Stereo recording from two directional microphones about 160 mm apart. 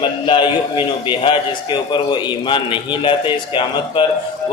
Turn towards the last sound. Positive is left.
turn(degrees=30)  # may be behind; listen again after turning